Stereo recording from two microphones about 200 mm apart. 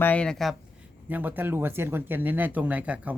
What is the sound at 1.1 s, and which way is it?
Speech, 10° right (ahead or behind).